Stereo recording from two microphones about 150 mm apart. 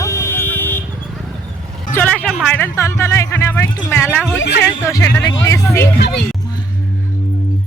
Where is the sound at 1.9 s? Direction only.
10° left (ahead or behind).